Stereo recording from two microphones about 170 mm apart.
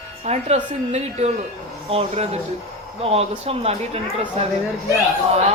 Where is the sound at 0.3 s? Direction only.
40° right (ahead or behind).